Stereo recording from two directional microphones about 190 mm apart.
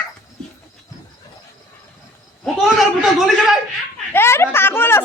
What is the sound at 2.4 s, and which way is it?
A man's voice, centre (ahead or behind).